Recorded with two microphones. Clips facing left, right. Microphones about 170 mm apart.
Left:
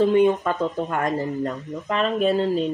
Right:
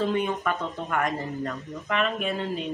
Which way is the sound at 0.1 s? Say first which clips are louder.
Left 8 dB; 25° left (ahead or behind).